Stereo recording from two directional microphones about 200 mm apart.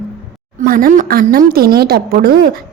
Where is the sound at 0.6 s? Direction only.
45° right (ahead or behind).